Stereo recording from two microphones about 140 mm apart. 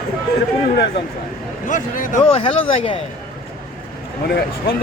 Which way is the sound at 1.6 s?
70° left (ahead or behind).